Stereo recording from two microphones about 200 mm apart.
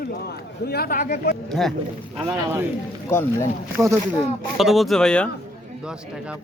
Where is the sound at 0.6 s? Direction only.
50° left (ahead or behind).